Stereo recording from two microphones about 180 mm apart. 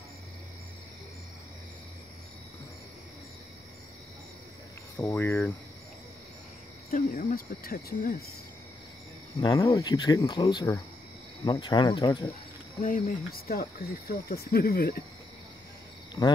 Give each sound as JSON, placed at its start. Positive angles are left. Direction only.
{"t": 4.9, "sound": "speech", "side_deg": 15}
{"t": 6.9, "sound": "speech", "side_deg": 45}
{"t": 9.4, "sound": "speech", "side_deg": 25}
{"t": 12.8, "sound": "speech", "side_deg": 50}